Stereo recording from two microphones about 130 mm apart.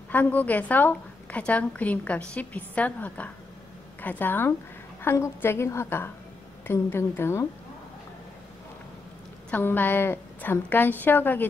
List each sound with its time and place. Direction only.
0.1 s a woman's voice: 15° left (ahead or behind)
9.5 s a woman's voice: 15° left (ahead or behind)